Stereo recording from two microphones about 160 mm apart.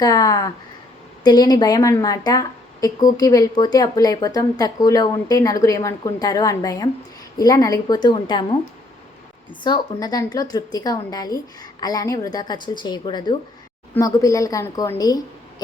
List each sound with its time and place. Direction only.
0.0 s a woman's voice: 20° left (ahead or behind)
9.6 s a woman's voice: 25° left (ahead or behind)